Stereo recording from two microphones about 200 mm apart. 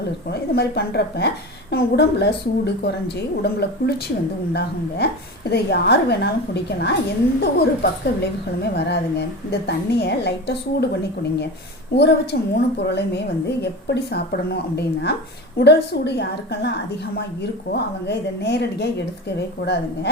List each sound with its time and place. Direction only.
0.3 s a woman's voice: 55° left (ahead or behind)
5.5 s a woman's voice: 55° left (ahead or behind)
11.9 s a woman's voice: 55° left (ahead or behind)